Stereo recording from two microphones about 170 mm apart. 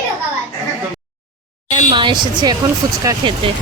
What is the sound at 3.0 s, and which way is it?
Speech, 25° right (ahead or behind).